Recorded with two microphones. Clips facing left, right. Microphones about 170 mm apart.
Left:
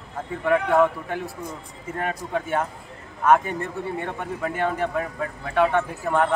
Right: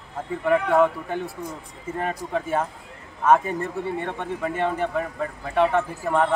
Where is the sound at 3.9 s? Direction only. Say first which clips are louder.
Right 1 dB; centre (ahead or behind).